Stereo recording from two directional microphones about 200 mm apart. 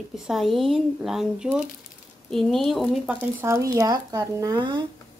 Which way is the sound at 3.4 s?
15° right (ahead or behind).